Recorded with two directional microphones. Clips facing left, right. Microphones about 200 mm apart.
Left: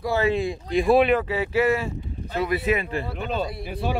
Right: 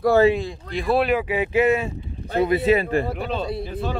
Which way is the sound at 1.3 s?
20° right (ahead or behind).